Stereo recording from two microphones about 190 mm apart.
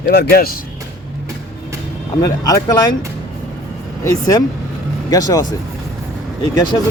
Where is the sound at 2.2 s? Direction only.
20° left (ahead or behind).